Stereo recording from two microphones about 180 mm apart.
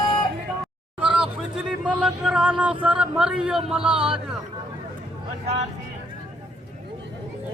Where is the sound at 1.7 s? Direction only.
5° right (ahead or behind).